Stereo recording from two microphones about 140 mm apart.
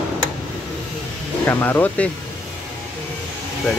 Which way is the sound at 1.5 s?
15° left (ahead or behind).